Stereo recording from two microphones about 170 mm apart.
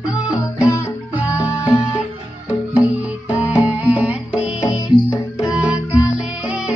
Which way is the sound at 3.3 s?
10° right (ahead or behind).